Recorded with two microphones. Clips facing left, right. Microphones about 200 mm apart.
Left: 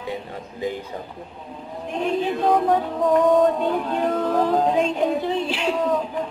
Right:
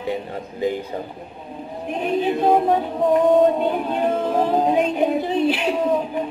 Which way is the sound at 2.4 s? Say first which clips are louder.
Right 1 dB; 25° right (ahead or behind).